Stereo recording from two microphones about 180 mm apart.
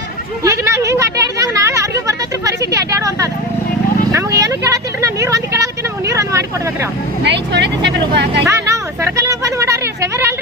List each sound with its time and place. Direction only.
0.4 s a sound: 15° right (ahead or behind)
6.1 s vehicle: 15° right (ahead or behind)
7.3 s speech: 70° right (ahead or behind)
8.4 s speech: 15° right (ahead or behind)